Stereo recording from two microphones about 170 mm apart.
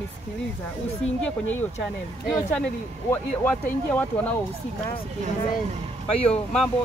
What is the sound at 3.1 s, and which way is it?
Speech, 10° left (ahead or behind).